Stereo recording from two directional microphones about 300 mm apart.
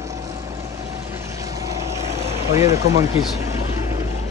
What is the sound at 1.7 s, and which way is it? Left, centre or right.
Vehicle, right.